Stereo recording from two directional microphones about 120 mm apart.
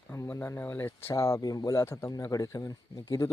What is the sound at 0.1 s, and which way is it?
Speech, 20° left (ahead or behind).